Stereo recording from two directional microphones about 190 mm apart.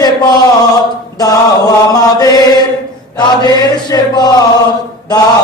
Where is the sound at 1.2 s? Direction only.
20° left (ahead or behind).